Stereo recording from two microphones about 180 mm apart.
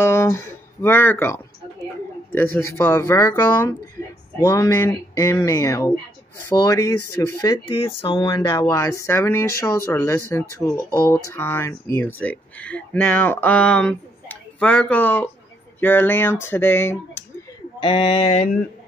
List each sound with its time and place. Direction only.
0.0 s speech: 15° left (ahead or behind)
17.7 s speech: 30° left (ahead or behind)